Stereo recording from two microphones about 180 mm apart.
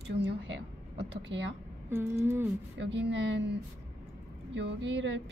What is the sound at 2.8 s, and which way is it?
Speech, 80° right.